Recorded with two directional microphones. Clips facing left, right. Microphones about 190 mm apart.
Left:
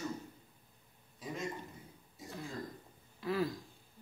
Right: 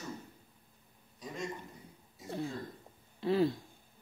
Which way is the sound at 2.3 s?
30° right (ahead or behind).